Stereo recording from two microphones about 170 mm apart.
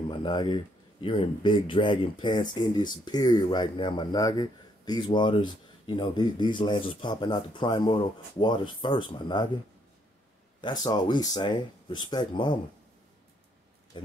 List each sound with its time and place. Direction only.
0.1 s speech: 25° left (ahead or behind)
10.6 s speech: 25° left (ahead or behind)
13.9 s a sound: 30° left (ahead or behind)